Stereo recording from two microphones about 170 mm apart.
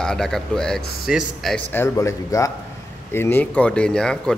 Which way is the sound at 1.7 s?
15° left (ahead or behind).